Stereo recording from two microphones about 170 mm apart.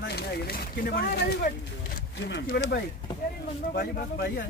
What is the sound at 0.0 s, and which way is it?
Speech, 70° left (ahead or behind).